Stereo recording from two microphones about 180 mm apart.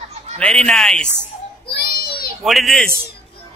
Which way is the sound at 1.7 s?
60° left (ahead or behind).